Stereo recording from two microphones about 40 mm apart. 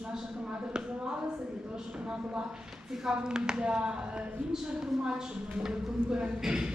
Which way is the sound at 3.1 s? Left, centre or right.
Centre.